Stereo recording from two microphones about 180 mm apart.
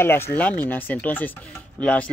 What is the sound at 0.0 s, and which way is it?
Speech, 10° left (ahead or behind).